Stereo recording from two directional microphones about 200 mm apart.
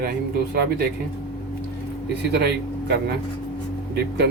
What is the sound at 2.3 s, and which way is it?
Speech, 55° right (ahead or behind).